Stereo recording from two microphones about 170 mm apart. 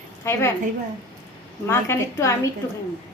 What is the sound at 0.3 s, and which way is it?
Speech, 15° left (ahead or behind).